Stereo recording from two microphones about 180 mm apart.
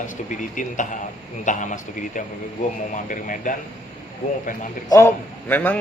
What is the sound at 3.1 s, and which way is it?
Speech, 45° left (ahead or behind).